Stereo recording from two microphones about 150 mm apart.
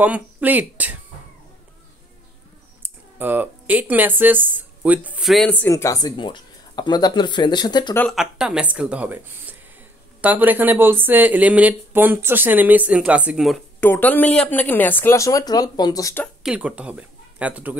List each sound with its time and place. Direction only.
0.0 s speech: 10° right (ahead or behind)
2.8 s speech: 10° right (ahead or behind)
5.5 s speech: 15° left (ahead or behind)
8.1 s speech: 5° right (ahead or behind)
13.7 s speech: 10° left (ahead or behind)
16.4 s speech: 10° right (ahead or behind)